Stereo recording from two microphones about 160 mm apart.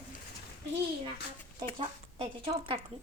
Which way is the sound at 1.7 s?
35° right (ahead or behind).